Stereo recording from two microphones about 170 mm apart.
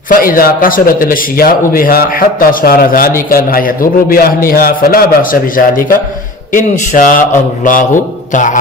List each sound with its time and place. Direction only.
0.1 s a man's voice: 55° left (ahead or behind)